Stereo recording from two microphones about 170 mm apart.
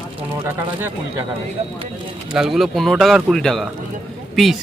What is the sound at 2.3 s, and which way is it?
Speech, centre (ahead or behind).